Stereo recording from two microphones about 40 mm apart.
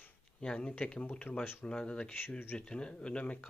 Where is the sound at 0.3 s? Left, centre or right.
Left.